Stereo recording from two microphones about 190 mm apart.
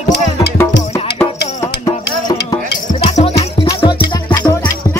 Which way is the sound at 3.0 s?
30° left (ahead or behind).